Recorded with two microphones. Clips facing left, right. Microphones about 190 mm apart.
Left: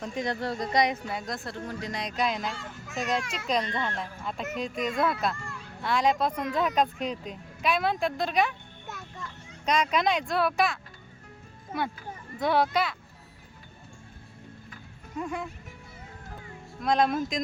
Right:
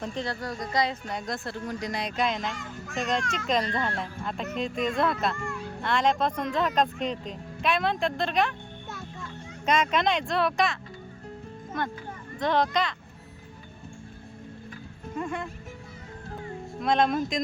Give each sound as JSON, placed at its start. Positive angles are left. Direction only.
{"t": 0.0, "sound": "speech", "side_deg": 10}
{"t": 0.3, "sound": "speech", "side_deg": 25}
{"t": 1.0, "sound": "speech", "side_deg": 0}
{"t": 15.2, "sound": "speech", "side_deg": 5}
{"t": 16.8, "sound": "speech", "side_deg": 0}